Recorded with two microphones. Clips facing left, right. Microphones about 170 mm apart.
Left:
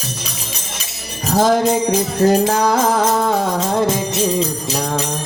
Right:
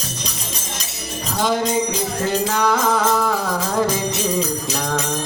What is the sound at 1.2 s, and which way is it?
Music, 40° left (ahead or behind).